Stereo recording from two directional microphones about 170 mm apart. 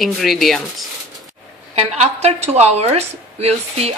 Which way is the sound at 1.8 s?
40° right (ahead or behind).